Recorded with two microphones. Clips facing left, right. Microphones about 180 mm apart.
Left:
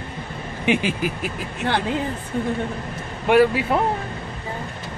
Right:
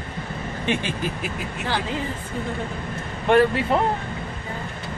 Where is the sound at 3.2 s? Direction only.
5° left (ahead or behind).